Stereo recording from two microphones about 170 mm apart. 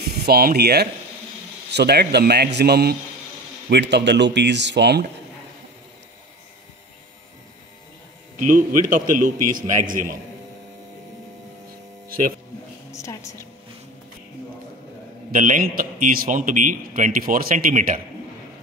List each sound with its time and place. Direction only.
0.0 s a man's voice: 65° right (ahead or behind)
3.7 s speech: 90° right
8.5 s a man's voice: 55° right (ahead or behind)
12.9 s a sound: 15° left (ahead or behind)
15.3 s a man's voice: 50° right (ahead or behind)